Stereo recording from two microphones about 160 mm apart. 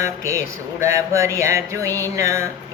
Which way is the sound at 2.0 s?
20° right (ahead or behind).